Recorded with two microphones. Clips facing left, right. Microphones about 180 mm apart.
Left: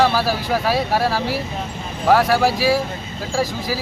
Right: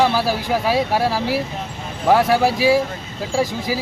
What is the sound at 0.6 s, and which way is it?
Speech, 20° right (ahead or behind).